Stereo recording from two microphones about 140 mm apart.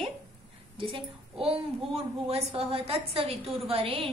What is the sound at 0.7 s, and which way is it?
A woman's voice, 40° right (ahead or behind).